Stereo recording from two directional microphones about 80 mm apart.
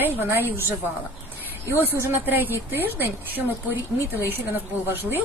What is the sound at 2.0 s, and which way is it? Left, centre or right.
A woman's voice, right.